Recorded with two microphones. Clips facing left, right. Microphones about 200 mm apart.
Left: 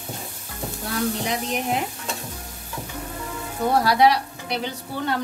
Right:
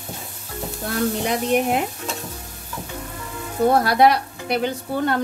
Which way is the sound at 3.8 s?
55° right (ahead or behind).